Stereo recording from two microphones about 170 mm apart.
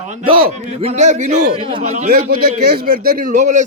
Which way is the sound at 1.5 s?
35° right (ahead or behind).